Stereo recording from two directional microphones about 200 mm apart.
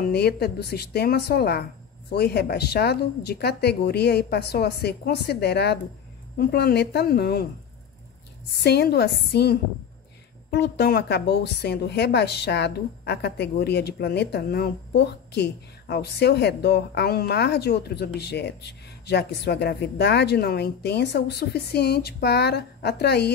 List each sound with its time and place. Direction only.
0.0 s speech: 50° left (ahead or behind)
8.6 s a woman's voice: 55° left (ahead or behind)